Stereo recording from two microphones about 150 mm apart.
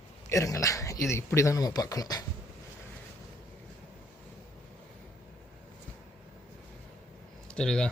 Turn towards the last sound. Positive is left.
turn(degrees=5)  # may be behind; listen again after turning